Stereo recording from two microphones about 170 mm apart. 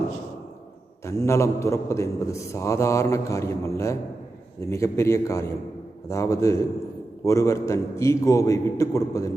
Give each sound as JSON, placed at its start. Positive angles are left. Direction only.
{"t": 1.0, "sound": "a man's voice", "side_deg": 15}